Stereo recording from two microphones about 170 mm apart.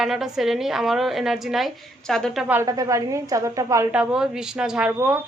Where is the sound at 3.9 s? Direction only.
5° right (ahead or behind).